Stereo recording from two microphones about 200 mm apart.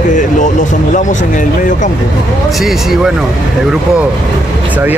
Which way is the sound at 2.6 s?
Centre (ahead or behind).